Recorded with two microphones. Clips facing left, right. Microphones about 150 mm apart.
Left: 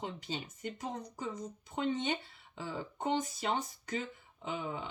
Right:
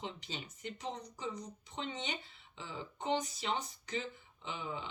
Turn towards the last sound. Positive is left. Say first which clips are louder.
# left 4 dB
turn(degrees=45)  # may be behind; listen again after turning